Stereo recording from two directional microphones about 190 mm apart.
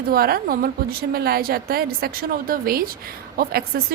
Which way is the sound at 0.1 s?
50° right (ahead or behind).